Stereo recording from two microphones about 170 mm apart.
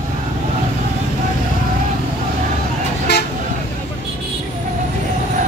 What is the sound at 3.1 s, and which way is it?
Toot, 80° left.